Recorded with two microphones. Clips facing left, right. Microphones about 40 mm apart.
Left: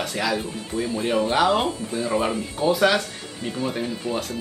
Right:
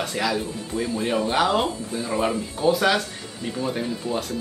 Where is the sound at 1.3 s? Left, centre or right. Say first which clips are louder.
Left 1 dB; centre.